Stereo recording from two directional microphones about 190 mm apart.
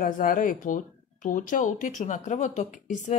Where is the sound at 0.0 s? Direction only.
45° left (ahead or behind).